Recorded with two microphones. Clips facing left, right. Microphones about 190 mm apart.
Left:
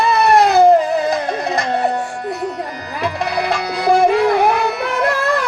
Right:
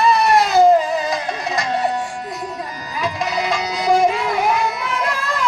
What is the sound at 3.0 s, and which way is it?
Music, 60° left (ahead or behind).